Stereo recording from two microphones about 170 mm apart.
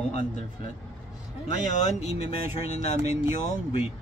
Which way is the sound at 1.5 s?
40° left (ahead or behind).